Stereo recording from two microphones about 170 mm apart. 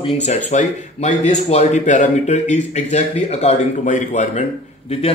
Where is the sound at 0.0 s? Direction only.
40° left (ahead or behind).